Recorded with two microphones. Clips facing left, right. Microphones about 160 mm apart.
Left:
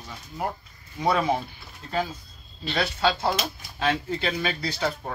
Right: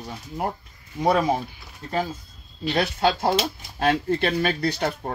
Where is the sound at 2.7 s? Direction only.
50° right (ahead or behind).